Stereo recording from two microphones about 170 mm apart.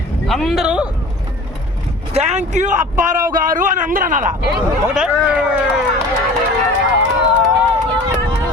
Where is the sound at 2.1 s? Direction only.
40° right (ahead or behind).